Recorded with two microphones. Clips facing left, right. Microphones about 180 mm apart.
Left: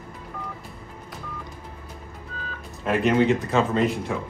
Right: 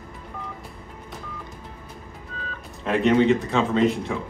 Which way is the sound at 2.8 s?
5° left (ahead or behind).